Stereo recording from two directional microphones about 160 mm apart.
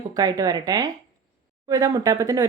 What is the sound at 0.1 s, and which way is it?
Speech, 25° right (ahead or behind).